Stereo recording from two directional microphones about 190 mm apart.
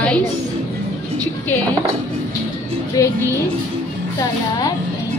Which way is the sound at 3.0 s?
15° left (ahead or behind).